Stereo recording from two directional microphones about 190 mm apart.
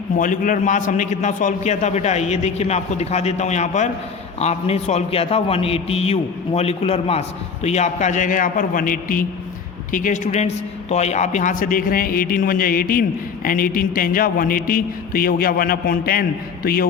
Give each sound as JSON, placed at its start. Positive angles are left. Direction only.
{"t": 0.2, "sound": "a man's voice", "side_deg": 45}